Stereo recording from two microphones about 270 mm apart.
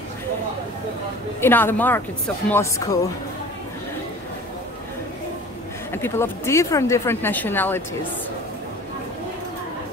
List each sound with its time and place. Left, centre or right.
1.4 s a woman's voice: centre
5.9 s a woman's voice: centre